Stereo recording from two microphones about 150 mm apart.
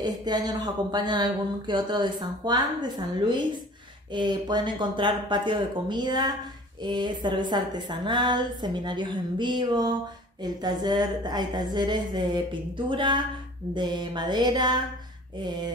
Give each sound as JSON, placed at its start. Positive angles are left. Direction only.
{"t": 0.0, "sound": "a woman's voice", "side_deg": -30}